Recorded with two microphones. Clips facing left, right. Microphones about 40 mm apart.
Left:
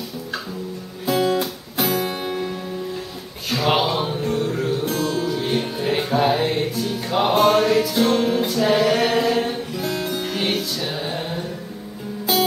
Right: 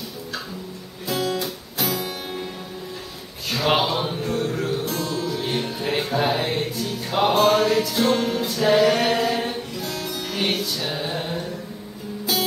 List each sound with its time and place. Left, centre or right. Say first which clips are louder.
1.0 s music: left 5 dB; centre
3.4 s music: left 1 dB; centre
5.0 s music: left 4 dB; centre
5.3 s music: left 3 dB; centre
8.5 s mantra: right 4 dB; centre
9.8 s music: left 4 dB; centre